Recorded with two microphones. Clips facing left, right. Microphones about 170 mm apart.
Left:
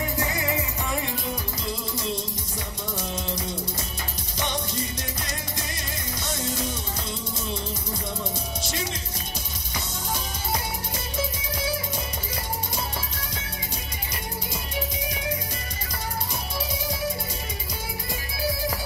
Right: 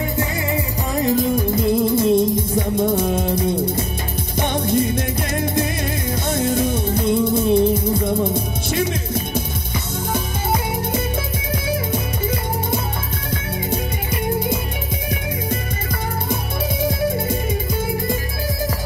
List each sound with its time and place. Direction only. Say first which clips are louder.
1.0 s music: right 14 dB; 45° right (ahead or behind)